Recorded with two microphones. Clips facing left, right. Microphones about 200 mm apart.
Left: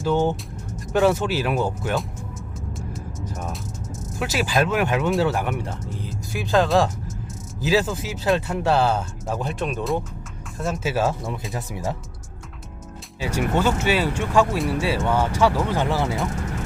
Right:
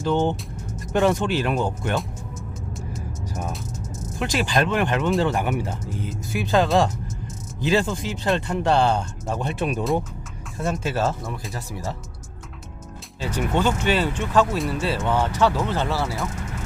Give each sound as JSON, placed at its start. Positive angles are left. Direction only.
{"t": 0.0, "sound": "speech", "side_deg": 5}
{"t": 2.7, "sound": "music", "side_deg": 0}
{"t": 4.0, "sound": "speech", "side_deg": 5}
{"t": 13.1, "sound": "speech", "side_deg": 10}